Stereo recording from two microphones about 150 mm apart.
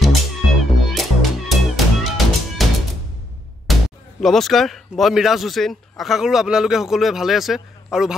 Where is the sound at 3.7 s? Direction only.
Centre (ahead or behind).